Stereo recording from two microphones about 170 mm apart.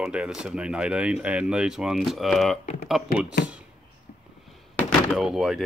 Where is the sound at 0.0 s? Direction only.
5° right (ahead or behind).